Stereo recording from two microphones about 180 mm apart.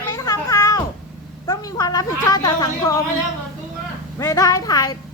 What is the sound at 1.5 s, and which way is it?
A woman's voice, 20° left (ahead or behind).